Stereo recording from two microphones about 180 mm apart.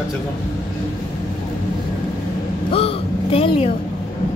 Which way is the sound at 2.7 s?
30° left (ahead or behind).